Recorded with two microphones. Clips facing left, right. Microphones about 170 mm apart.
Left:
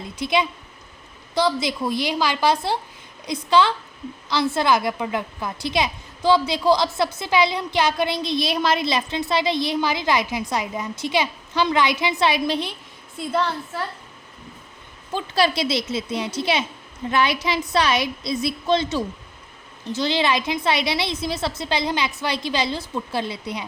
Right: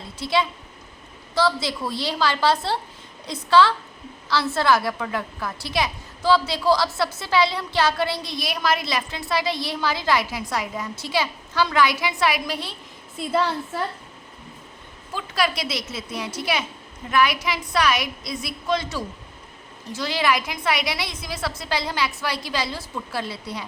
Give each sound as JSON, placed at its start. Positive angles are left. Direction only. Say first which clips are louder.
{"t": 0.0, "sound": "a woman's voice", "louder": "left 1 dB", "side_deg": 15}
{"t": 13.1, "sound": "a woman's voice", "louder": "right 1 dB", "side_deg": -5}
{"t": 15.1, "sound": "a woman's voice", "louder": "left 4 dB", "side_deg": 30}